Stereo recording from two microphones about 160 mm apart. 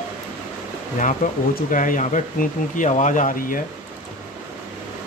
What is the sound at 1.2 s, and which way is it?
Speech, 55° left (ahead or behind).